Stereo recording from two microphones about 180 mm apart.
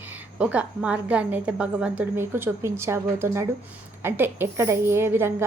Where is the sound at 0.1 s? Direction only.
5° right (ahead or behind).